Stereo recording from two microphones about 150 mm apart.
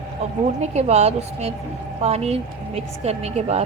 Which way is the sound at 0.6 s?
45° right (ahead or behind).